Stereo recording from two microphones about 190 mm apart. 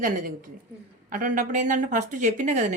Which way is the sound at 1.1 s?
45° right (ahead or behind).